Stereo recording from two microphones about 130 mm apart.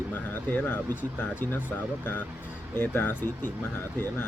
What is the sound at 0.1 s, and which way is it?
Speech, 15° left (ahead or behind).